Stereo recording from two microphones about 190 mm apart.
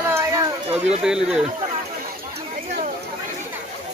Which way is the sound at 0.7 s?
35° right (ahead or behind).